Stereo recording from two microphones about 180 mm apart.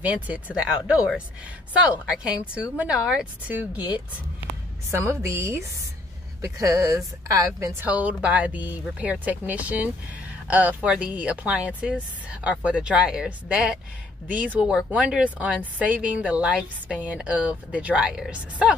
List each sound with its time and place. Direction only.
0.0 s a woman's voice: 10° right (ahead or behind)
2.5 s speech: 5° right (ahead or behind)
5.2 s a woman's voice: 15° right (ahead or behind)